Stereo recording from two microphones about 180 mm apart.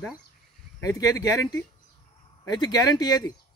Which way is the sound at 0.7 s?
20° left (ahead or behind).